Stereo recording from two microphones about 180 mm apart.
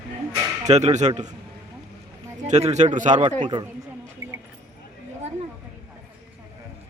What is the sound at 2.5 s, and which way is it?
Speech, 40° right (ahead or behind).